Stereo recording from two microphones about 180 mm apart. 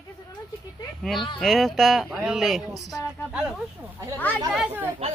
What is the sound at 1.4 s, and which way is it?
Speech, centre (ahead or behind).